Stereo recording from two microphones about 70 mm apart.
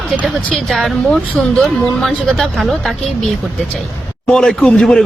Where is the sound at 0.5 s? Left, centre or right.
Centre.